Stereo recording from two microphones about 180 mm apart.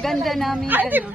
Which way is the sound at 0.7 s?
10° right (ahead or behind).